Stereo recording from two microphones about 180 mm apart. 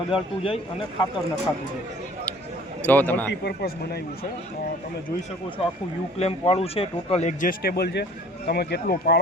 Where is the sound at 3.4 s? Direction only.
60° left (ahead or behind).